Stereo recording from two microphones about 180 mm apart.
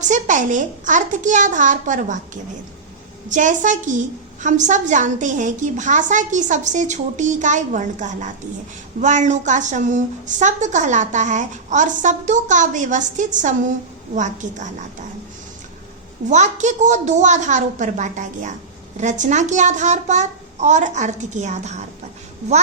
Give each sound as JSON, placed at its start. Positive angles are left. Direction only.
{"t": 0.1, "sound": "a woman's voice", "side_deg": -45}
{"t": 16.3, "sound": "a child's voice", "side_deg": -40}